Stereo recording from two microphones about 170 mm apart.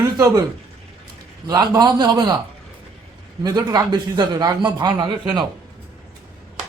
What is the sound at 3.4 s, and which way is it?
A man's voice, 25° right (ahead or behind).